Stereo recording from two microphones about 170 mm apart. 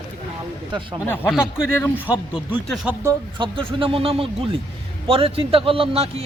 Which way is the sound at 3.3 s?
30° right (ahead or behind).